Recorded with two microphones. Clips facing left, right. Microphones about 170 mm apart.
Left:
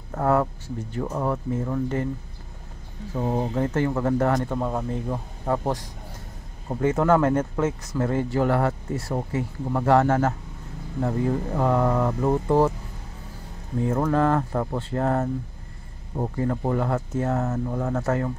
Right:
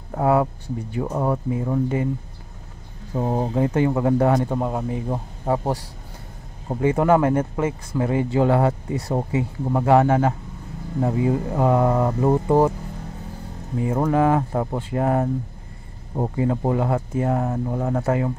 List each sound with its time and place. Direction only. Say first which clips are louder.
0.1 s speech: right 3 dB; 10° right (ahead or behind)
3.2 s speech: right 3 dB; 25° right (ahead or behind)
5.5 s speech: right 2 dB; 10° right (ahead or behind)
13.7 s speech: right 2 dB; 10° right (ahead or behind)
16.3 s speech: right 3 dB; 15° right (ahead or behind)